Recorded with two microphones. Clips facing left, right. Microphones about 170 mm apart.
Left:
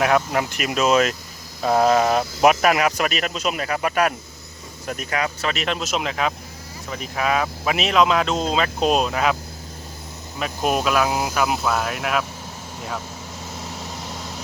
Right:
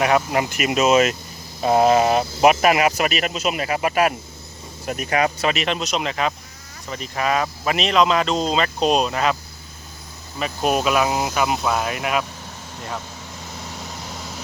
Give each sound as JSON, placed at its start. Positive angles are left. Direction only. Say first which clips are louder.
{"t": 0.0, "sound": "speech", "louder": "right 1 dB", "side_deg": -5}
{"t": 1.6, "sound": "speech", "louder": "right 2 dB", "side_deg": -25}
{"t": 1.9, "sound": "speech", "louder": "right 1 dB", "side_deg": -5}
{"t": 5.1, "sound": "speech", "louder": "right 5 dB", "side_deg": -20}
{"t": 5.5, "sound": "speech", "louder": "right 1 dB", "side_deg": 0}